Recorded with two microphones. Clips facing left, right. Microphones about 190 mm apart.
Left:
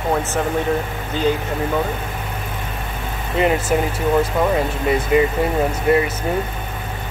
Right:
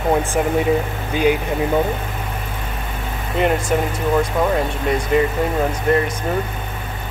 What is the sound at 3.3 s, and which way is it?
Speech, centre (ahead or behind).